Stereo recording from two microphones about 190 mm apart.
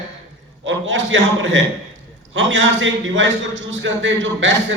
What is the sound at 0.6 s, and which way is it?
A man's voice, 80° right.